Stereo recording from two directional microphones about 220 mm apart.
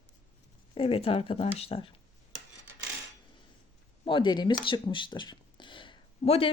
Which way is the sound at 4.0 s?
20° left (ahead or behind).